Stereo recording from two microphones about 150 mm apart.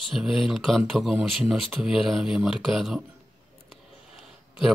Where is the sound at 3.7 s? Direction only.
Centre (ahead or behind).